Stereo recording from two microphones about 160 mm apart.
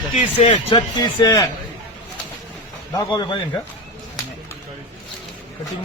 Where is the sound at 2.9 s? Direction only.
25° left (ahead or behind).